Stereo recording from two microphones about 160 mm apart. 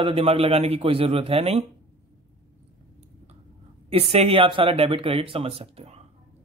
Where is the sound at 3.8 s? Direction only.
40° right (ahead or behind).